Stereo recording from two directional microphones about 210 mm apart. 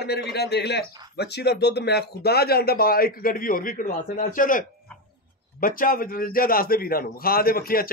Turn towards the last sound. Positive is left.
turn(degrees=45)  # may be behind; listen again after turning